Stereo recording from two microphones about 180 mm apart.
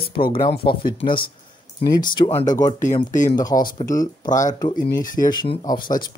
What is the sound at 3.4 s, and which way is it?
Speech, 25° left (ahead or behind).